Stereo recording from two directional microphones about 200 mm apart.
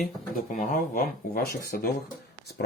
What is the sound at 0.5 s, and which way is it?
Speech, 40° left (ahead or behind).